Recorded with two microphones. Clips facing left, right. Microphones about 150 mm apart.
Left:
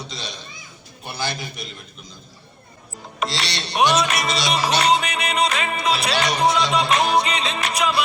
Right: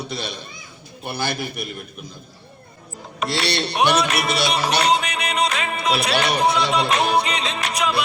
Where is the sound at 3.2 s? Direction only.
60° right (ahead or behind).